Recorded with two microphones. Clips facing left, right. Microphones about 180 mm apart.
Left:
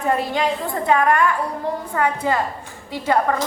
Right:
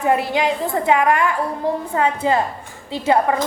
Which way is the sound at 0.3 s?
20° right (ahead or behind).